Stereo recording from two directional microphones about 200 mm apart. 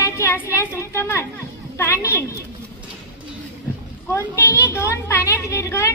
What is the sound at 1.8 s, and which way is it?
Speech, 15° left (ahead or behind).